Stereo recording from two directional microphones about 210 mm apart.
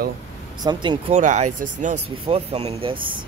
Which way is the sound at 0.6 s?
20° right (ahead or behind).